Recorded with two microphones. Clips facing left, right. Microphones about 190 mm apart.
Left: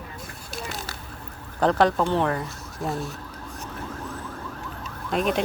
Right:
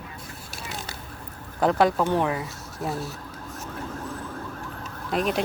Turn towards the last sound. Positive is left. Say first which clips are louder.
# left 1 dB
turn(degrees=0)  # may be behind; listen again after turning